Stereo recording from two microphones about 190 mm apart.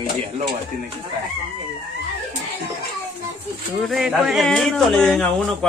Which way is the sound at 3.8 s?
Centre (ahead or behind).